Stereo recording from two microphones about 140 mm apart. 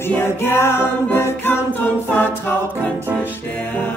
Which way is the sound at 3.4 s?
15° left (ahead or behind).